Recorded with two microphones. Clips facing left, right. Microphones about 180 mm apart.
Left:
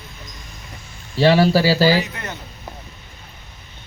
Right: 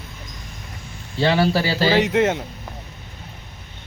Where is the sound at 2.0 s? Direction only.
90° right.